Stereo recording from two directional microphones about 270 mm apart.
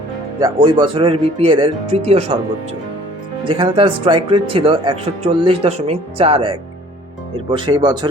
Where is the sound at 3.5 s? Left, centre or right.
Centre.